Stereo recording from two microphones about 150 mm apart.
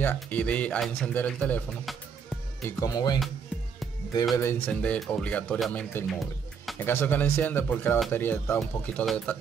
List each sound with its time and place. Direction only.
0.0 s a man's voice: 10° left (ahead or behind)
2.8 s speech: 25° left (ahead or behind)
4.4 s speech: 15° left (ahead or behind)